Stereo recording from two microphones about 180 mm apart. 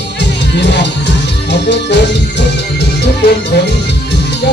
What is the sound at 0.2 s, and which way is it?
Speech, 75° left (ahead or behind).